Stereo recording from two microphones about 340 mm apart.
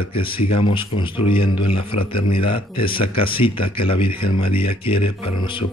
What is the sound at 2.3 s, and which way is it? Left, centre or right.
Speech, left.